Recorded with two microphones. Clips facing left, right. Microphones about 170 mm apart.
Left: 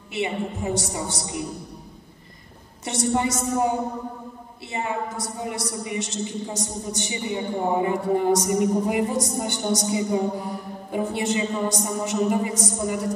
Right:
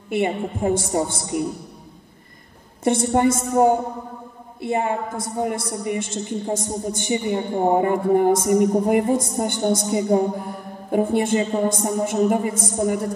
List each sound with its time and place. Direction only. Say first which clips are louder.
0.1 s a woman's voice: right 5 dB; 50° right (ahead or behind)
2.8 s a woman's voice: right 6 dB; 50° right (ahead or behind)